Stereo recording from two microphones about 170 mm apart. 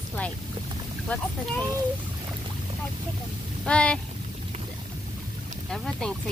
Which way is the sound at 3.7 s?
5° left (ahead or behind).